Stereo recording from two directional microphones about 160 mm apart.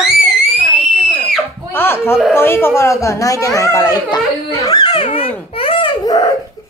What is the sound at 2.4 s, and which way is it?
A child's voice, 15° left (ahead or behind).